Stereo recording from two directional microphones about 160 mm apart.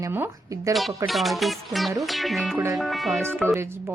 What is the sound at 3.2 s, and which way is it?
Speech, 15° right (ahead or behind).